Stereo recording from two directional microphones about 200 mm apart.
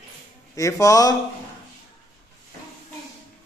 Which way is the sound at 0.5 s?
15° left (ahead or behind).